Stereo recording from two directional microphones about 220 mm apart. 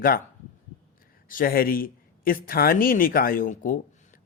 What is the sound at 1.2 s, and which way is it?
Speech, 40° left (ahead or behind).